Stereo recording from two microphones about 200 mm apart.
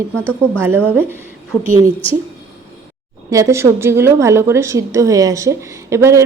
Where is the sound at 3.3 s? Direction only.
15° right (ahead or behind).